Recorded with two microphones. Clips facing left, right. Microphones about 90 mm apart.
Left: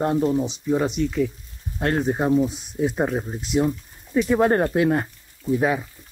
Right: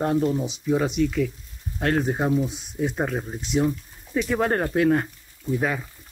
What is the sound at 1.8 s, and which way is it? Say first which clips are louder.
Speech: left 1 dB; 5° left (ahead or behind).